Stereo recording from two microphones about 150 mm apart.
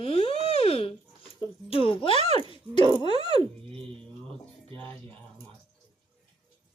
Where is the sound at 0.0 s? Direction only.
40° left (ahead or behind).